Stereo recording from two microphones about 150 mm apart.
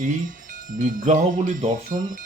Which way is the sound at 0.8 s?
55° right (ahead or behind).